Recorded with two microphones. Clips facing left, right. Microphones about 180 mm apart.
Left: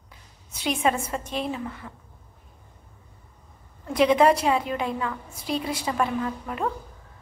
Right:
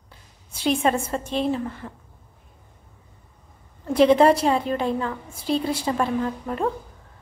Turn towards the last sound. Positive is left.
turn(degrees=-30)  # may be behind; listen again after turning